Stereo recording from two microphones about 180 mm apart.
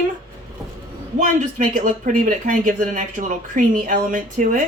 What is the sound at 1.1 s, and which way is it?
Speech, 45° right (ahead or behind).